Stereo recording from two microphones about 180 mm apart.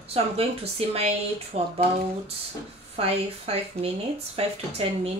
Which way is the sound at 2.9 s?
35° right (ahead or behind).